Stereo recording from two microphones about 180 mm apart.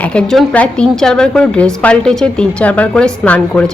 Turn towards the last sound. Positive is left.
turn(degrees=5)  # may be behind; listen again after turning